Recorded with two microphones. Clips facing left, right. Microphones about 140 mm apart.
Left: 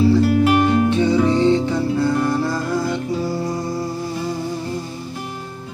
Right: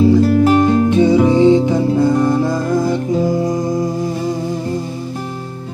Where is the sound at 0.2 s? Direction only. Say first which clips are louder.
Right 4 dB; 35° right (ahead or behind).